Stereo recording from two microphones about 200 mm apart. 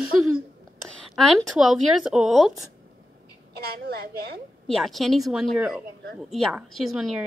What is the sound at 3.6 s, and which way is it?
Speech, 50° right (ahead or behind).